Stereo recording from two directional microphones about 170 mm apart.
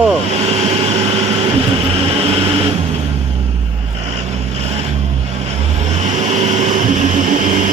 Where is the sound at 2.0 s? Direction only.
35° right (ahead or behind).